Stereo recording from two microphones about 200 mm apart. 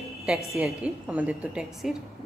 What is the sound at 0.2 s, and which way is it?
A woman's voice, 5° right (ahead or behind).